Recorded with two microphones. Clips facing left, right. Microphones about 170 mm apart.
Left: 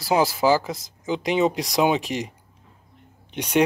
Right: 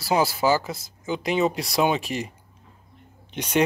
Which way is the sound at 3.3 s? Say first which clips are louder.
Left 2 dB; 10° left (ahead or behind).